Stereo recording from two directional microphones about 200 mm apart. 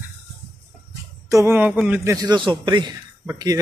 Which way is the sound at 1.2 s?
15° right (ahead or behind).